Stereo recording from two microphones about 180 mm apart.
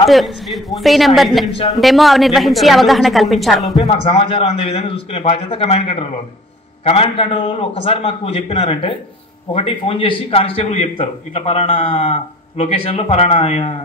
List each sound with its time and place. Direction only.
0.1 s a woman's voice: centre (ahead or behind)
3.7 s a man's voice: 30° left (ahead or behind)